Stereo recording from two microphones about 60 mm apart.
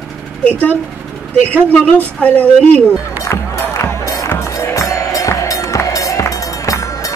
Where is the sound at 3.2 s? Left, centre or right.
Left.